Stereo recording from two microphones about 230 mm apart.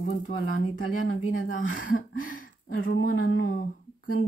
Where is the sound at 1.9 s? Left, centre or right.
Left.